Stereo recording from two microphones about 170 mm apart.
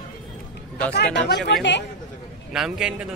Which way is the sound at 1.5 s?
90° left.